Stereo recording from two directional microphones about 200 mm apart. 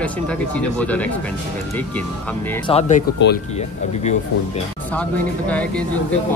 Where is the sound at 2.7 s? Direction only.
35° left (ahead or behind).